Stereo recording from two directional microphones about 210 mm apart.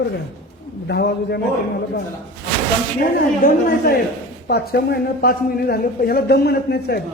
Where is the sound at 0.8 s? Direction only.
50° left (ahead or behind).